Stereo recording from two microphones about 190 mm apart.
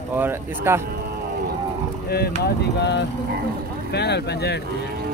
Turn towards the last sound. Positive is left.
turn(degrees=60)  # may be behind; listen again after turning